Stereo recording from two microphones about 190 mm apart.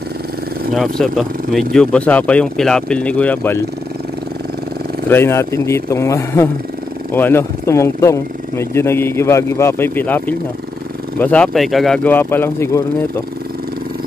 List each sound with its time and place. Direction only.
0.7 s speech: centre (ahead or behind)
5.1 s speech: 15° left (ahead or behind)